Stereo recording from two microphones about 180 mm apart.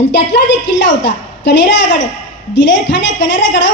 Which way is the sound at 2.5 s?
85° left.